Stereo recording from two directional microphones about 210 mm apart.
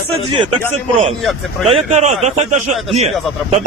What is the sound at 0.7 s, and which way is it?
A man's voice, 30° right (ahead or behind).